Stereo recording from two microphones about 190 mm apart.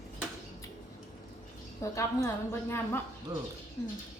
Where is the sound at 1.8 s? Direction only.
15° left (ahead or behind).